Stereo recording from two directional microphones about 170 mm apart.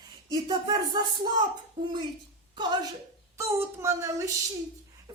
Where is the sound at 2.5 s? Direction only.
25° right (ahead or behind).